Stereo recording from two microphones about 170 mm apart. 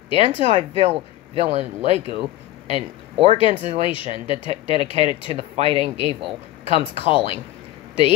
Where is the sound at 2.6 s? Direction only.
35° right (ahead or behind).